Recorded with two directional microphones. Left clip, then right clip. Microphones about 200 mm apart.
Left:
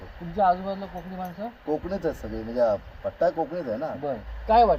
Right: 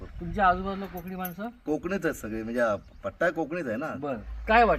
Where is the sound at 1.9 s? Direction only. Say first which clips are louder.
Left 1 dB; 20° right (ahead or behind).